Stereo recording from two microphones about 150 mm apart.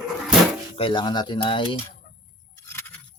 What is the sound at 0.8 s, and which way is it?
Speech, 35° left (ahead or behind).